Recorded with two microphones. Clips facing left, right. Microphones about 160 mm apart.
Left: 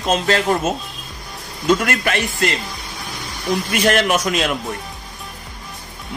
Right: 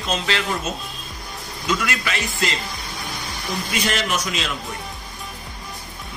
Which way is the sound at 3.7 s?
55° left (ahead or behind).